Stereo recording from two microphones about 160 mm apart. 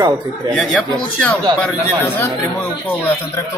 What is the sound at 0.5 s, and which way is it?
A man's voice, centre (ahead or behind).